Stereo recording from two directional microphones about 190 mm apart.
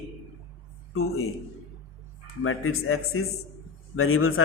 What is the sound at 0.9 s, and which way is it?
Speech, 90° left.